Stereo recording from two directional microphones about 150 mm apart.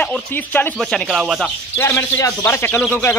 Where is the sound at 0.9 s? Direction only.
5° right (ahead or behind).